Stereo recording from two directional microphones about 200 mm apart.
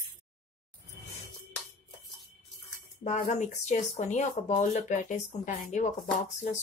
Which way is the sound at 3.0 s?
35° left (ahead or behind).